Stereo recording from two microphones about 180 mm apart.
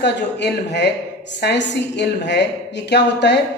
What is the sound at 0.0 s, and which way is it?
Speech, 70° left (ahead or behind).